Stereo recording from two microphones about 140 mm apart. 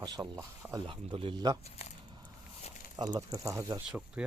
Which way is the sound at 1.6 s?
50° left (ahead or behind).